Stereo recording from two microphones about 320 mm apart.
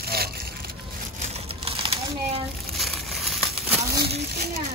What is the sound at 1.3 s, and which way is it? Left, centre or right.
Typewriter, centre.